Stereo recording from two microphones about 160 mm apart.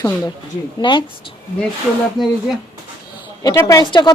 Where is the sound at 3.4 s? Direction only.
20° left (ahead or behind).